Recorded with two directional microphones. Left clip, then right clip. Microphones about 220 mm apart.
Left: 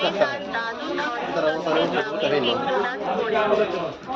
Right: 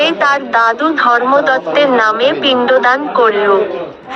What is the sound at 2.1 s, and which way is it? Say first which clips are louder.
Speech: right 10 dB; 45° right (ahead or behind).